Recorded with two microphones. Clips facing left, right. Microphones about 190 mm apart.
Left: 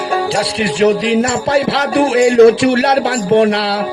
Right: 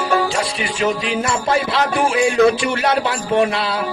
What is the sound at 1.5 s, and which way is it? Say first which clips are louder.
Music: left 4 dB; 80° left.